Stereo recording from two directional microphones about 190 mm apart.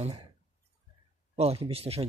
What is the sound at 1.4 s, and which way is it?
Speech, 30° right (ahead or behind).